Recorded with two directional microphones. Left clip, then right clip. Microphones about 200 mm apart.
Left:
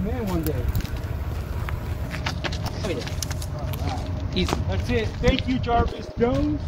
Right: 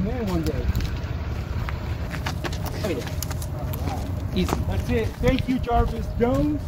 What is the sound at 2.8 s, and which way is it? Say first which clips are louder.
Vehicle: right 3 dB; 35° right (ahead or behind).